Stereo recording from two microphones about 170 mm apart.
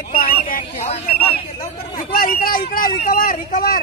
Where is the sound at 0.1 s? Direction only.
55° left (ahead or behind).